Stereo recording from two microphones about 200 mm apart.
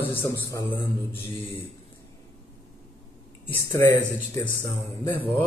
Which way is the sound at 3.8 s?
15° left (ahead or behind).